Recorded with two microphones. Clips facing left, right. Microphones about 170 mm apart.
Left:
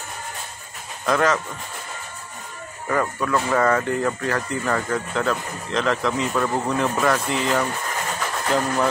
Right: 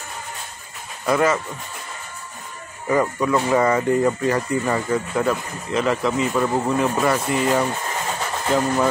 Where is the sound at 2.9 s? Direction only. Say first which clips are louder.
Right 3 dB; 10° right (ahead or behind).